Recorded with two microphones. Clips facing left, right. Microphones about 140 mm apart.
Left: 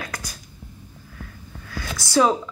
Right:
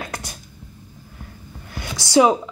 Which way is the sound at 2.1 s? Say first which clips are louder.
Right 4 dB; 20° right (ahead or behind).